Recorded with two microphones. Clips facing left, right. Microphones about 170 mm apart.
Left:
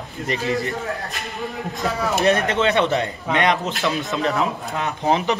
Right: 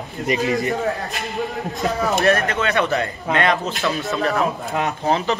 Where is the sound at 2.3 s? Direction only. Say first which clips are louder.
Left 4 dB; 20° left (ahead or behind).